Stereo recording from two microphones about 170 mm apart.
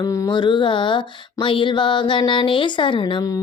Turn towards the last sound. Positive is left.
turn(degrees=25)  # may be behind; listen again after turning